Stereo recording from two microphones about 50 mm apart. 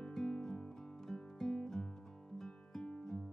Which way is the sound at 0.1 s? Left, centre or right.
Centre.